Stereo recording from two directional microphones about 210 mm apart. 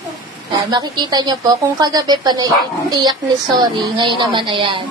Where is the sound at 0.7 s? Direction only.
20° right (ahead or behind).